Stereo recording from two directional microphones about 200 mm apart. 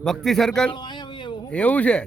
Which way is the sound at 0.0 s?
Centre (ahead or behind).